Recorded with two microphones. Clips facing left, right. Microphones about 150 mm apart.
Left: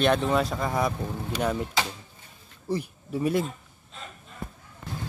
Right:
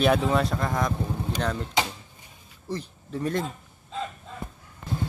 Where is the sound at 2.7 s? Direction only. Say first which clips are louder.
Left 3 dB; 10° left (ahead or behind).